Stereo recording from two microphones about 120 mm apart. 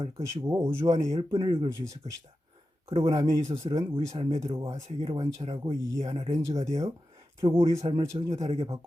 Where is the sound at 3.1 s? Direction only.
25° right (ahead or behind).